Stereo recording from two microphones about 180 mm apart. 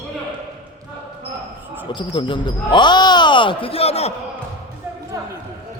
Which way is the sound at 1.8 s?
25° left (ahead or behind).